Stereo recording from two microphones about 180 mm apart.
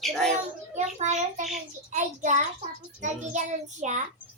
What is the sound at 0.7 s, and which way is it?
Child singing, 40° right (ahead or behind).